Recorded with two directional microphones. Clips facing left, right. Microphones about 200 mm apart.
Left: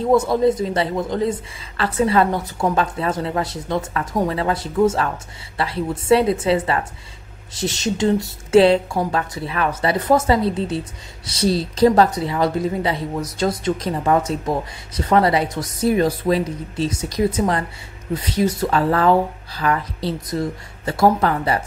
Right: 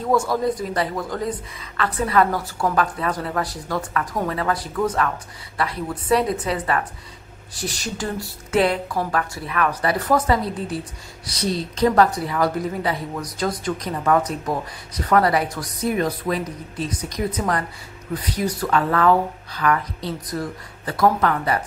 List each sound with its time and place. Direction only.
0.0 s a woman's voice: 20° left (ahead or behind)